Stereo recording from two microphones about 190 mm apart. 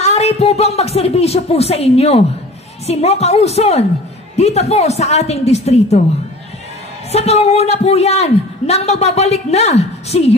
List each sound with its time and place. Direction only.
0.0 s a man's voice: 35° left (ahead or behind)
7.1 s a man's voice: 35° left (ahead or behind)